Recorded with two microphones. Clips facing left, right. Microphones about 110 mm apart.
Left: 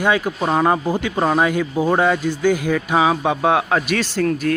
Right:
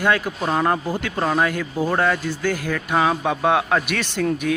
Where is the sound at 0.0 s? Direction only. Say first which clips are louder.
Left 2 dB; 10° left (ahead or behind).